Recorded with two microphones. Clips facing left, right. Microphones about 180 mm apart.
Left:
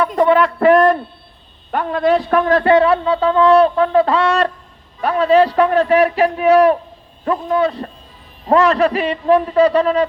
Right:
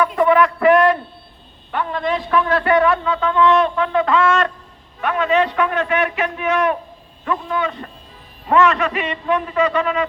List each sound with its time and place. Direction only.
0.0 s a sound: 35° left (ahead or behind)
1.7 s a man's voice: 45° left (ahead or behind)
2.6 s speech: 30° left (ahead or behind)